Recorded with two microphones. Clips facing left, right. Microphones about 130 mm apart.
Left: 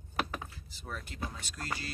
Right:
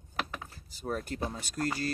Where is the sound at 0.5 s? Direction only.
45° right (ahead or behind).